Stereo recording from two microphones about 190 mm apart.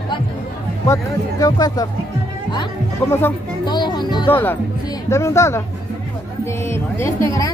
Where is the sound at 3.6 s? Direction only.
25° left (ahead or behind).